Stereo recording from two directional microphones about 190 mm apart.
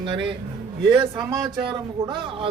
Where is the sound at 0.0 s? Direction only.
25° right (ahead or behind).